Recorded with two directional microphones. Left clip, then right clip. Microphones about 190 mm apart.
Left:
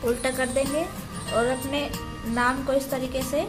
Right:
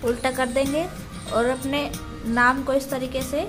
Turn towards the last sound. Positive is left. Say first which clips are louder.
# right 1 dB
turn(degrees=-20)  # may be behind; listen again after turning